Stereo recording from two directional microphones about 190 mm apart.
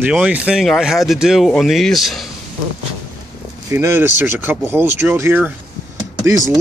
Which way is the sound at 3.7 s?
10° right (ahead or behind).